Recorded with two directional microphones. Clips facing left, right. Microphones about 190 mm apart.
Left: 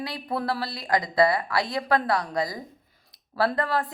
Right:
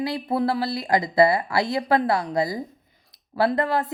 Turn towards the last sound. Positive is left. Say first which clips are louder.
# right 3 dB
turn(degrees=-25)  # may be behind; listen again after turning